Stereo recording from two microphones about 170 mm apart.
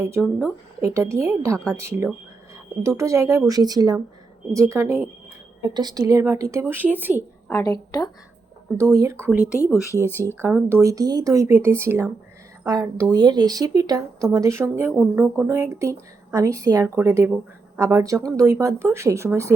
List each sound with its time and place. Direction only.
0.2 s speech: centre (ahead or behind)
0.8 s speech: 15° right (ahead or behind)
7.4 s a woman's voice: 20° left (ahead or behind)
8.8 s speech: 15° right (ahead or behind)
9.4 s speech: 15° left (ahead or behind)
10.3 s speech: 15° right (ahead or behind)